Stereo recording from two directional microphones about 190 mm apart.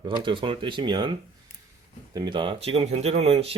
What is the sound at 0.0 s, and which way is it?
Speech, 25° right (ahead or behind).